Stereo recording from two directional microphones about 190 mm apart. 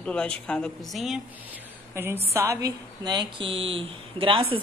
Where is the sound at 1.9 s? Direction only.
10° right (ahead or behind).